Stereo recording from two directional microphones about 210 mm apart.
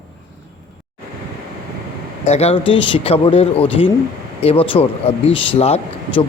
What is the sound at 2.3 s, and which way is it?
Speech, 30° left (ahead or behind).